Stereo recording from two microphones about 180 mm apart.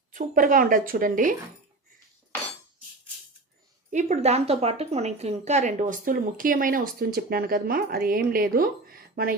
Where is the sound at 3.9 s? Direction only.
40° right (ahead or behind).